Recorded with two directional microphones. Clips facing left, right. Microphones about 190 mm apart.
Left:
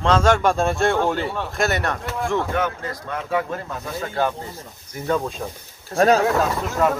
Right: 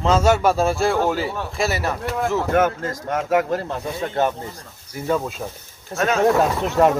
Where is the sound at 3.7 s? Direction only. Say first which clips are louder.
Right 3 dB; 20° right (ahead or behind).